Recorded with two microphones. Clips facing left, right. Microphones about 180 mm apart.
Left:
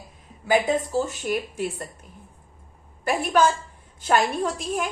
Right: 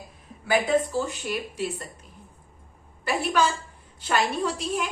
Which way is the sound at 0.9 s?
45° left (ahead or behind).